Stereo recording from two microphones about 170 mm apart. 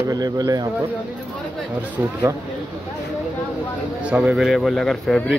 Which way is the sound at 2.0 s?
15° right (ahead or behind).